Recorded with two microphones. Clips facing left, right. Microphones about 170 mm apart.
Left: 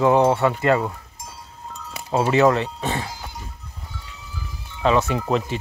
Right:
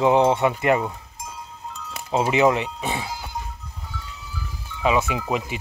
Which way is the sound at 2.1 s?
15° right (ahead or behind).